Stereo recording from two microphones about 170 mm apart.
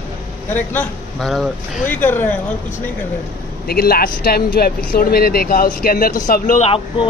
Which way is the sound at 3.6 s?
60° left (ahead or behind).